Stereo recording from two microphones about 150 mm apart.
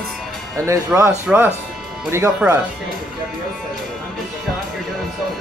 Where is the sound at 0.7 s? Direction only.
20° right (ahead or behind).